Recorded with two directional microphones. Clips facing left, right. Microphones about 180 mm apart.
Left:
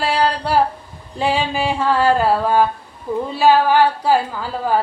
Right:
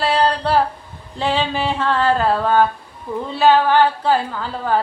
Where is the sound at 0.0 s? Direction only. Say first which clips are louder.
Right 1 dB; 10° left (ahead or behind).